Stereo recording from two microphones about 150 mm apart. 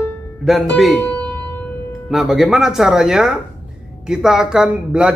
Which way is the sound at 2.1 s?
Centre (ahead or behind).